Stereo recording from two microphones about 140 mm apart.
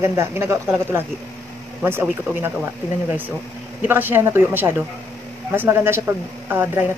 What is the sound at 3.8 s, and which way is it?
A woman's voice, 15° right (ahead or behind).